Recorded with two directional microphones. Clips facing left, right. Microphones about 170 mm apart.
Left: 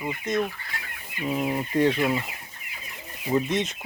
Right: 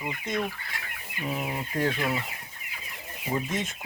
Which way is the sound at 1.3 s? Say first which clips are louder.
Left 6 dB; centre (ahead or behind).